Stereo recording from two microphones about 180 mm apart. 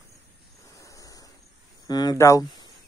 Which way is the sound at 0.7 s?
20° left (ahead or behind).